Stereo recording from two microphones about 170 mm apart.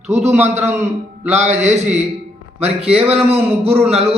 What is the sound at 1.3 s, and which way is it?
A man's voice, 40° right (ahead or behind).